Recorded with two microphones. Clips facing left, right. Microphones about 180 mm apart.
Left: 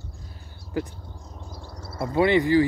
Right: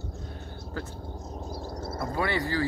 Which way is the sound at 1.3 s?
35° right (ahead or behind).